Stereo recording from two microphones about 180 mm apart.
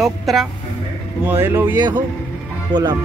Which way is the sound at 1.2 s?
10° right (ahead or behind).